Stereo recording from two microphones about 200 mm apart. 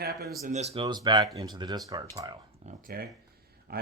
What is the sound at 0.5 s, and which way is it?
Speech, 30° right (ahead or behind).